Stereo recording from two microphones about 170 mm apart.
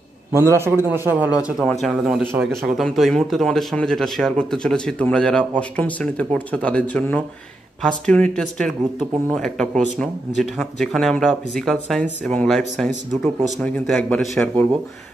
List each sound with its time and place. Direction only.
0.3 s a man's voice: 15° right (ahead or behind)
1.6 s speech: centre (ahead or behind)